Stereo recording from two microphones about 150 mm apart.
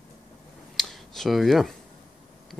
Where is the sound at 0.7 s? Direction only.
5° left (ahead or behind).